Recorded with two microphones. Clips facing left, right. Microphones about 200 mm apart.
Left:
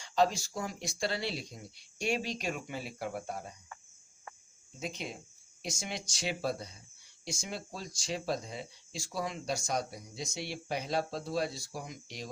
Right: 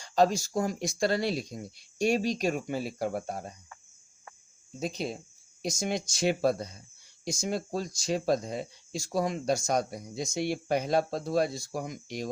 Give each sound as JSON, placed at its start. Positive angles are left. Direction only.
{"t": 0.0, "sound": "speech", "side_deg": -40}
{"t": 4.8, "sound": "speech", "side_deg": -35}
{"t": 5.8, "sound": "speech", "side_deg": -45}